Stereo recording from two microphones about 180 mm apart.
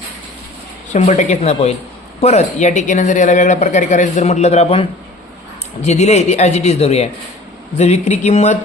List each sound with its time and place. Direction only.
0.9 s speech: 40° left (ahead or behind)